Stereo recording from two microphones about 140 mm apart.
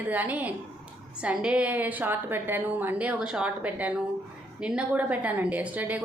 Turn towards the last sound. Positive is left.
turn(degrees=-10)  # may be behind; listen again after turning